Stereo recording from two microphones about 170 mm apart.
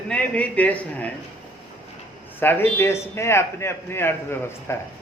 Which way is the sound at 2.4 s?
10° left (ahead or behind).